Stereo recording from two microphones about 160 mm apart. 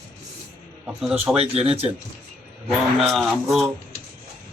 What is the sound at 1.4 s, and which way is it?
Speech, 40° right (ahead or behind).